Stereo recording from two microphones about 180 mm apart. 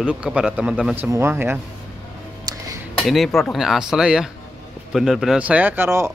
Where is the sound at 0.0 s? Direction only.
5° right (ahead or behind).